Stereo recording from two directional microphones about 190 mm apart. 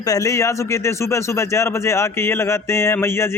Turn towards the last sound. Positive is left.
turn(degrees=15)  # may be behind; listen again after turning